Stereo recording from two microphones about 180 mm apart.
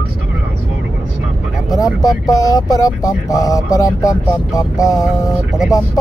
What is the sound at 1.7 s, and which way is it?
Speech, 20° left (ahead or behind).